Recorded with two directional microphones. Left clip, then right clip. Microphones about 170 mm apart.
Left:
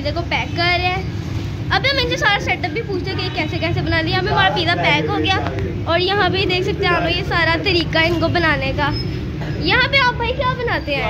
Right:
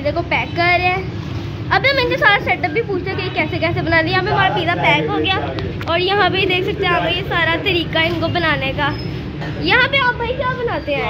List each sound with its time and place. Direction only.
0.0 s a woman's voice: 15° right (ahead or behind)
5.1 s a woman's voice: 5° left (ahead or behind)
6.1 s a woman's voice: 5° right (ahead or behind)
9.6 s a woman's voice: 10° right (ahead or behind)
9.9 s a woman's voice: centre (ahead or behind)